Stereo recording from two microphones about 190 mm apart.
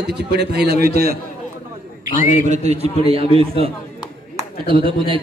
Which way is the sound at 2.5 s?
35° right (ahead or behind).